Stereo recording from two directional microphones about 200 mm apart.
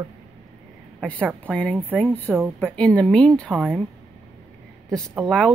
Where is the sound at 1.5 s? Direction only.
5° left (ahead or behind).